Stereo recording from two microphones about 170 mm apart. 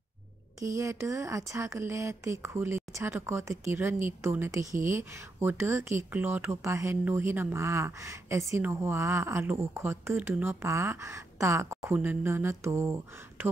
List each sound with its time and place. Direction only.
0.7 s speech: 15° right (ahead or behind)